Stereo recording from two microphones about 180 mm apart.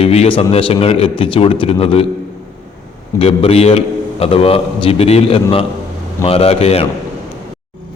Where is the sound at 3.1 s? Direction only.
35° left (ahead or behind).